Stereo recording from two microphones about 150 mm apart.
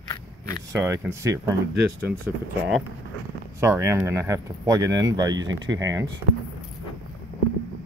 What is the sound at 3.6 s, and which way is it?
Speech, 20° right (ahead or behind).